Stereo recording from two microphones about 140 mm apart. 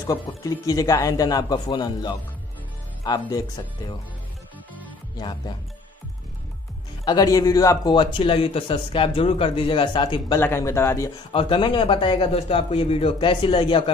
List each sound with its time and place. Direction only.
0.0 s speech: 25° left (ahead or behind)
7.1 s a man's voice: 25° left (ahead or behind)
10.4 s speech: 20° left (ahead or behind)
11.3 s a man's voice: 35° left (ahead or behind)